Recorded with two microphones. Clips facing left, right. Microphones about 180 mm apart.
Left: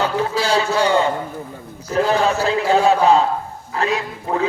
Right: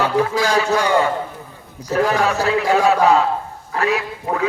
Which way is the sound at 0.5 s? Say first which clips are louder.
Left 2 dB; 30° left (ahead or behind).